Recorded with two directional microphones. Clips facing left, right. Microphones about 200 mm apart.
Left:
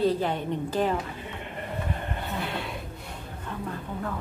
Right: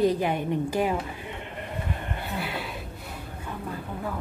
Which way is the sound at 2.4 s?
5° right (ahead or behind).